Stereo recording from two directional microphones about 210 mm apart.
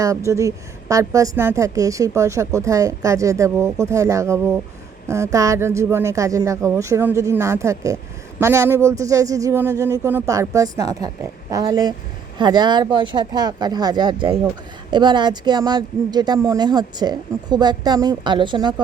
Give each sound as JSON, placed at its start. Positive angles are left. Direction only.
{"t": 0.0, "sound": "a woman's voice", "side_deg": -15}